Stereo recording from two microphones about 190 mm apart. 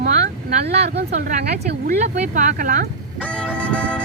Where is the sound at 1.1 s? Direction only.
40° right (ahead or behind).